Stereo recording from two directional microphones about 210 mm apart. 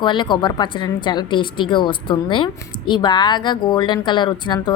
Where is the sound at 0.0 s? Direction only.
20° left (ahead or behind).